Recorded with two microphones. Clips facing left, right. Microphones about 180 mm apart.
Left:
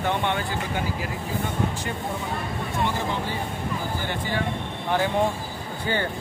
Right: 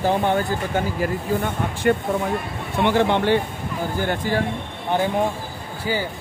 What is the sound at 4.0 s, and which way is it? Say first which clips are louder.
Speech: right 6 dB; 50° right (ahead or behind).